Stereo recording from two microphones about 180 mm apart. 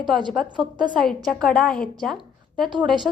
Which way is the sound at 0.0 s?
25° right (ahead or behind).